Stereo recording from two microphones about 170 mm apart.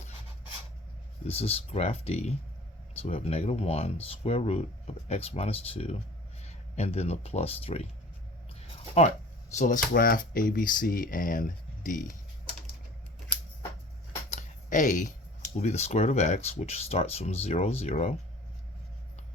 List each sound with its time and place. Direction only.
1.3 s speech: 35° left (ahead or behind)
9.6 s speech: 50° left (ahead or behind)
14.3 s speech: 50° left (ahead or behind)